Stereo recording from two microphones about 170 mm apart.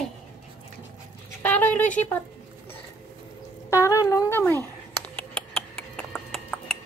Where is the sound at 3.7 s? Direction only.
15° left (ahead or behind).